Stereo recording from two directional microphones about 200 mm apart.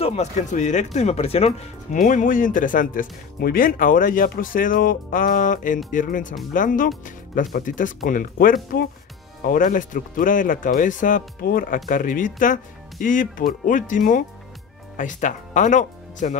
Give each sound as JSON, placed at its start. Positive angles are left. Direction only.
{"t": 0.0, "sound": "speech", "side_deg": 30}